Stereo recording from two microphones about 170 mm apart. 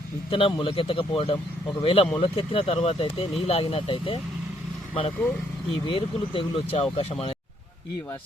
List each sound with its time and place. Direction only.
0.3 s speech: 30° left (ahead or behind)
5.7 s speech: 30° left (ahead or behind)